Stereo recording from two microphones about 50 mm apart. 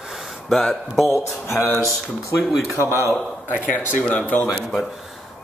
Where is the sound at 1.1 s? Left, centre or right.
Left.